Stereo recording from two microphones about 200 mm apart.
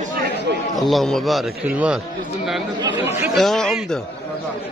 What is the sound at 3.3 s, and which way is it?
Speech, centre (ahead or behind).